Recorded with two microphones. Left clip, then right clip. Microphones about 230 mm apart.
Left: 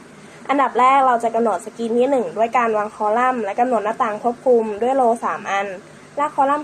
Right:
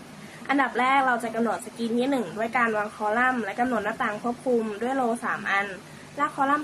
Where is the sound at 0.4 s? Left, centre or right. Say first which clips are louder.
Left 8 dB; centre.